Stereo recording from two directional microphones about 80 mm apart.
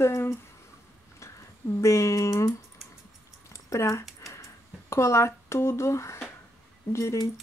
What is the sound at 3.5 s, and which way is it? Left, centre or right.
Speech, left.